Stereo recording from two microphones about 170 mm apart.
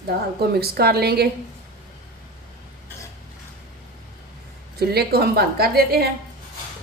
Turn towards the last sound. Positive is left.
turn(degrees=-65)  # may be behind; listen again after turning